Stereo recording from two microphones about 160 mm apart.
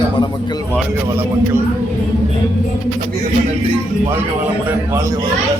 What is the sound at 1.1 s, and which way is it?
Speech, 15° right (ahead or behind).